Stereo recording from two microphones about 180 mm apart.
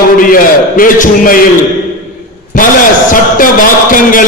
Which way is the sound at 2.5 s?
45° left (ahead or behind).